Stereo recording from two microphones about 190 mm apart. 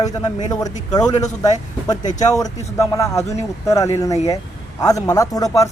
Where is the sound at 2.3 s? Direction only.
15° left (ahead or behind).